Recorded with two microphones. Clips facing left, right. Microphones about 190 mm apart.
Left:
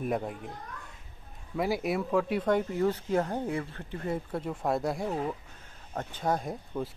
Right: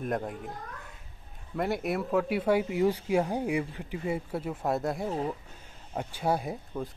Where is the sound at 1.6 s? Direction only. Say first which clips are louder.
Left 1 dB; centre (ahead or behind).